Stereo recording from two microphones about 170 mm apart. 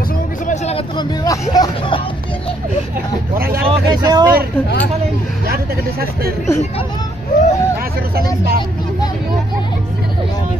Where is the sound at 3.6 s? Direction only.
25° right (ahead or behind).